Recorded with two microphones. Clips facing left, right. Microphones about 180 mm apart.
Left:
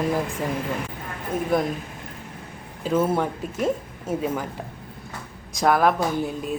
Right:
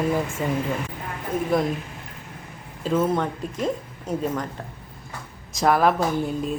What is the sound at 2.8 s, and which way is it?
Speech, 5° left (ahead or behind).